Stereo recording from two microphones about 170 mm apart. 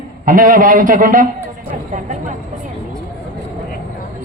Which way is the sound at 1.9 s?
45° right (ahead or behind).